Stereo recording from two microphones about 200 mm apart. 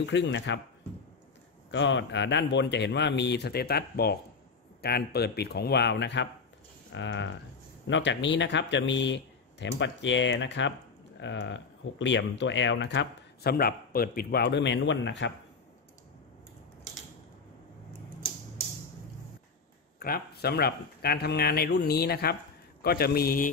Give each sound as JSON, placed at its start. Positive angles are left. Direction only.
{"t": 0.0, "sound": "speech", "side_deg": 60}
{"t": 1.7, "sound": "speech", "side_deg": 65}
{"t": 20.0, "sound": "speech", "side_deg": 50}